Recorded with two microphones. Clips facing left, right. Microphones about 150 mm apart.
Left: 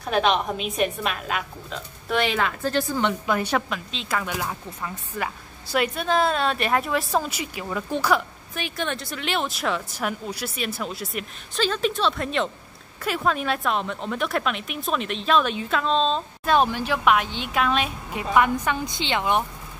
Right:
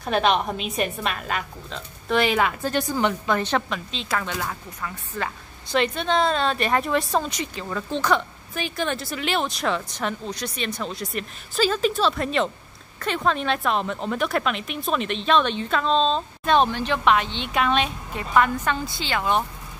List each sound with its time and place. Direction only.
0.1 s speech: centre (ahead or behind)
3.1 s speech: 5° left (ahead or behind)
18.3 s a woman's voice: 15° left (ahead or behind)